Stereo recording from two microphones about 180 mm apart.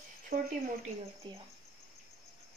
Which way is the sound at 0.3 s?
60° right (ahead or behind).